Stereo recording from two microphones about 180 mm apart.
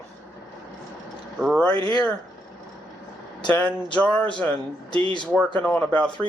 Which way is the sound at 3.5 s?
5° left (ahead or behind).